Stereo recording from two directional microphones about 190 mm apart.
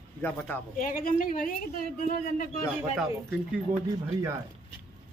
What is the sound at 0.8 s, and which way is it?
Speech, 45° left (ahead or behind).